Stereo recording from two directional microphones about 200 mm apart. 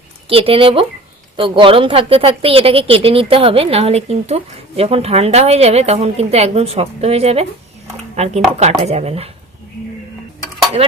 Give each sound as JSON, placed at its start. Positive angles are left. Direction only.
{"t": 0.3, "sound": "speech", "side_deg": -30}
{"t": 10.8, "sound": "speech", "side_deg": -30}